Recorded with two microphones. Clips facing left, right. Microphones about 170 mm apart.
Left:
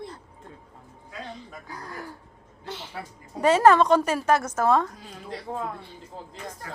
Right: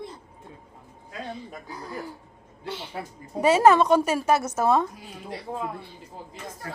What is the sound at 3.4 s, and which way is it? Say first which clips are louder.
A woman's voice: even; 10° right (ahead or behind).